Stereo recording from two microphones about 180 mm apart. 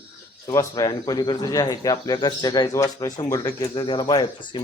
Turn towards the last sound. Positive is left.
turn(degrees=25)  # may be behind; listen again after turning